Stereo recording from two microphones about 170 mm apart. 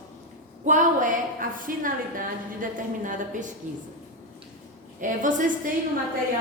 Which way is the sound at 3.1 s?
50° right (ahead or behind).